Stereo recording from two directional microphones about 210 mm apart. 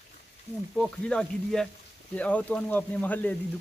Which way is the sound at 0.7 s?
5° left (ahead or behind).